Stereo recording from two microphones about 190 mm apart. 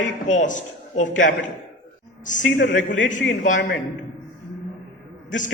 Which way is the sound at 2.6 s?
40° left (ahead or behind).